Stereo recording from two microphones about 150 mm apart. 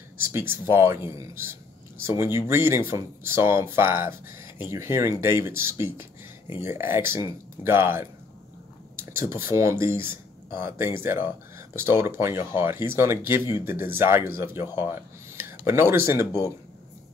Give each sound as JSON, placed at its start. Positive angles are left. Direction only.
{"t": 0.3, "sound": "speech", "side_deg": -15}
{"t": 9.3, "sound": "speech", "side_deg": -20}